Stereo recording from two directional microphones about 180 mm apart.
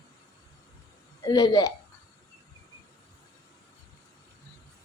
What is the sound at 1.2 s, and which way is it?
Speech, 20° left (ahead or behind).